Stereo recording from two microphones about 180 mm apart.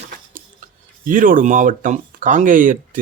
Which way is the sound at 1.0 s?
50° right (ahead or behind).